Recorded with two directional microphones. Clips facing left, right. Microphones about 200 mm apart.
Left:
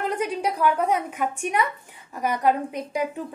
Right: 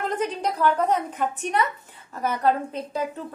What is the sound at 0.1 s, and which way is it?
A woman's voice, 10° left (ahead or behind).